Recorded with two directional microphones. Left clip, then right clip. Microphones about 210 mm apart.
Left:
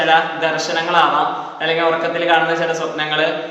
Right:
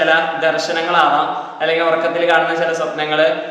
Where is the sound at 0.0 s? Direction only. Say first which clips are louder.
Right 1 dB; 5° right (ahead or behind).